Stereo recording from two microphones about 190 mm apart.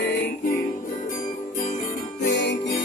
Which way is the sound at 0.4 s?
45° left (ahead or behind).